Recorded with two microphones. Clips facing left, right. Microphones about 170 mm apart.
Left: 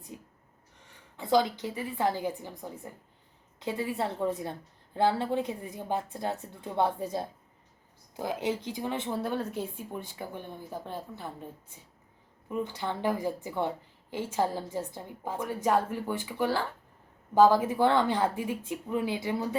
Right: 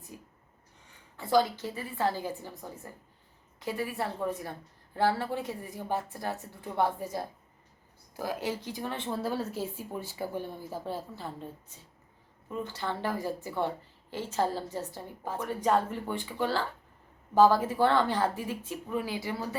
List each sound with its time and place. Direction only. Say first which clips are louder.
0.1 s a sound: left 2 dB; 20° left (ahead or behind)
1.1 s a woman's voice: even; 20° left (ahead or behind)
9.2 s a woman's voice: even; 5° right (ahead or behind)
12.5 s a woman's voice: left 2 dB; 15° left (ahead or behind)